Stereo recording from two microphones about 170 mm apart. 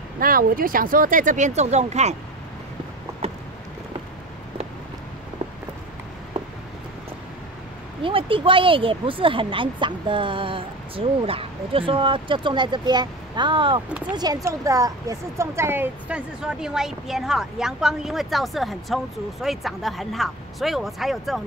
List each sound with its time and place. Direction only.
0.2 s speech: 55° right (ahead or behind); by 2.1 s 40° right (ahead or behind)
3.2 s a sound: 35° right (ahead or behind)
8.0 s a woman's voice: 30° right (ahead or behind); by 21.4 s centre (ahead or behind)